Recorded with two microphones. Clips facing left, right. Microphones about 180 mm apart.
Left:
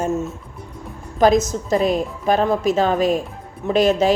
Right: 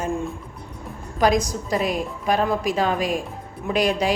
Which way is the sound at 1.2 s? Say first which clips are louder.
Left 5 dB; 25° left (ahead or behind).